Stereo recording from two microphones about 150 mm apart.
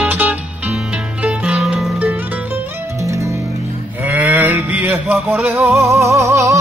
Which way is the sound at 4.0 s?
10° right (ahead or behind).